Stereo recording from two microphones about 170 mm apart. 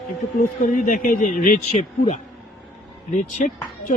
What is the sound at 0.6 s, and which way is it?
A man's voice, 50° left (ahead or behind).